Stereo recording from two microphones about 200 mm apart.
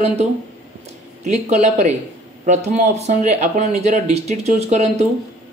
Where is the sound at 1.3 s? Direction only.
35° right (ahead or behind).